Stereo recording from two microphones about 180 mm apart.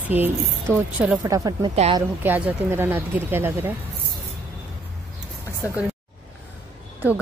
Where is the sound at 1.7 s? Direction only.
35° right (ahead or behind).